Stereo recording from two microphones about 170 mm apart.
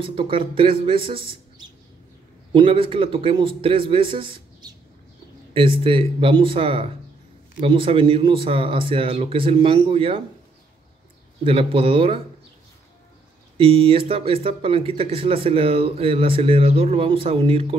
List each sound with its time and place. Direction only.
0.0 s speech: 30° right (ahead or behind)
11.4 s speech: 30° right (ahead or behind)
13.6 s speech: 30° right (ahead or behind)